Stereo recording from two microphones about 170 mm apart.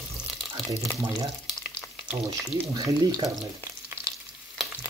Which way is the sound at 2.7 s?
25° right (ahead or behind).